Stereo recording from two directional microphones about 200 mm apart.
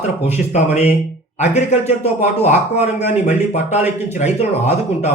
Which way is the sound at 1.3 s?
35° left (ahead or behind).